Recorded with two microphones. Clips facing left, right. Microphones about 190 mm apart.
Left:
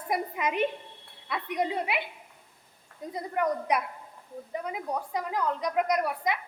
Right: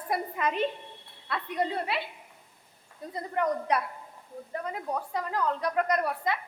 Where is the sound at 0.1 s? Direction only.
15° left (ahead or behind).